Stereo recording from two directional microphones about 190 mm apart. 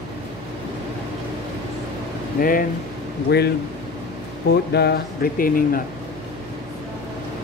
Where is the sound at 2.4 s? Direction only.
50° left (ahead or behind).